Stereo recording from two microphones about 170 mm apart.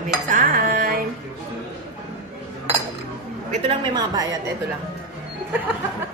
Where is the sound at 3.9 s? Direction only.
20° right (ahead or behind).